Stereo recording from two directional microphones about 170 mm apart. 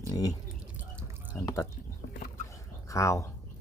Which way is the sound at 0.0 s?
20° left (ahead or behind).